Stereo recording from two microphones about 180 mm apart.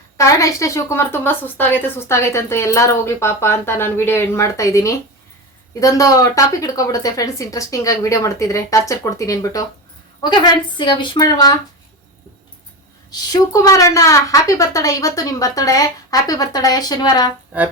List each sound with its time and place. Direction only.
0.2 s a woman's voice: 20° left (ahead or behind)
13.1 s a woman's voice: 20° left (ahead or behind)